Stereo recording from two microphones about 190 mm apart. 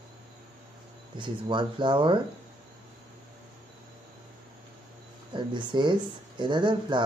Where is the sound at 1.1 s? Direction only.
25° right (ahead or behind).